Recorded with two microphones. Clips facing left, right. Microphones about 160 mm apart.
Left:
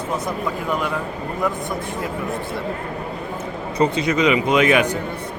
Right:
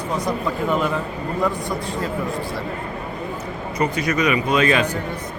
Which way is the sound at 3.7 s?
25° left (ahead or behind).